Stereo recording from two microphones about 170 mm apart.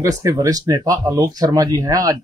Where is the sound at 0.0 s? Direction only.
20° right (ahead or behind).